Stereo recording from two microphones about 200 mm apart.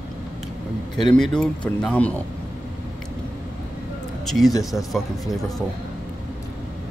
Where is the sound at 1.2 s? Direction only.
5° left (ahead or behind).